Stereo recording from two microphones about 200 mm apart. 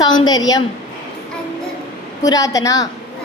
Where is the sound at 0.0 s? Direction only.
20° left (ahead or behind).